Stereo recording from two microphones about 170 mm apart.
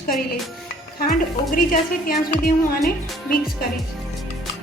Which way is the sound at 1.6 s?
60° left (ahead or behind).